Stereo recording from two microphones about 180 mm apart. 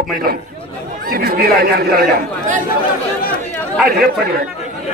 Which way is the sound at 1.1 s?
55° right (ahead or behind).